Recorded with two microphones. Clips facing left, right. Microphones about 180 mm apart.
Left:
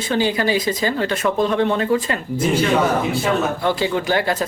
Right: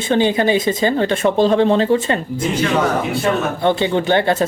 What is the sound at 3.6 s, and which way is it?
Speech, 25° right (ahead or behind).